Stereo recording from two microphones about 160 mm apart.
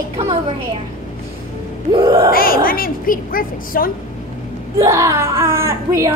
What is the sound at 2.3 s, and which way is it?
A woman's voice, 65° left (ahead or behind).